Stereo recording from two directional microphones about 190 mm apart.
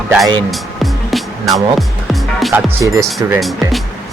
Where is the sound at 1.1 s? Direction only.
Centre (ahead or behind).